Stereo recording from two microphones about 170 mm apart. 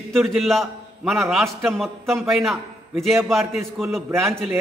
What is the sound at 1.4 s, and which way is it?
Speech, 15° right (ahead or behind).